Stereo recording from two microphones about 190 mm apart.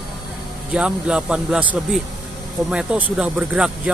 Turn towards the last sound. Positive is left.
turn(degrees=-5)  # may be behind; listen again after turning